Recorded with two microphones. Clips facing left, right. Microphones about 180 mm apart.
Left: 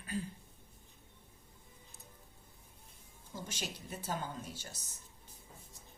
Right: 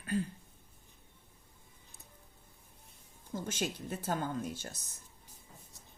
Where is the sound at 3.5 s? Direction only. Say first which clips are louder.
Right 8 dB; 55° right (ahead or behind).